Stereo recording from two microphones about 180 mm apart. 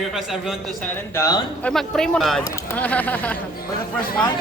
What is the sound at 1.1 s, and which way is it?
Speech, 20° left (ahead or behind).